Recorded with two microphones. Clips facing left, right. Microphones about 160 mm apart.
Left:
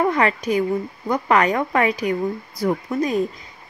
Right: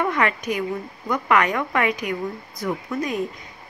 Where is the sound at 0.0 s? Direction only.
35° left (ahead or behind).